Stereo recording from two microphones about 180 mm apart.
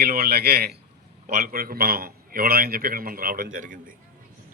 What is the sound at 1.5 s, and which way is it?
A man's voice, 55° right (ahead or behind).